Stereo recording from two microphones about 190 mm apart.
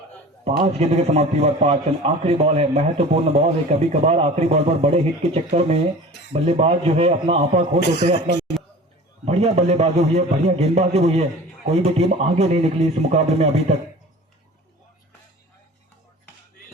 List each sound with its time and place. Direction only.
0.4 s a man's voice: 30° right (ahead or behind)
6.1 s speech: 65° left (ahead or behind)
6.3 s a man's voice: 30° right (ahead or behind)
7.8 s speech: 60° left (ahead or behind)
8.6 s a sound: centre (ahead or behind)
9.2 s a man's voice: 35° right (ahead or behind)